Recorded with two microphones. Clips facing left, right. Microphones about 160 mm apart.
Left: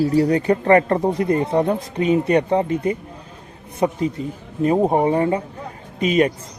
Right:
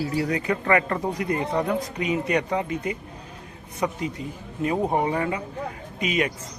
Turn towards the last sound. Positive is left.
turn(degrees=35)  # may be behind; listen again after turning